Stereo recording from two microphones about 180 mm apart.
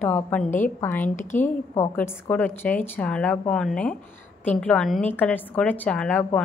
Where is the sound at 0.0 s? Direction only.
10° left (ahead or behind).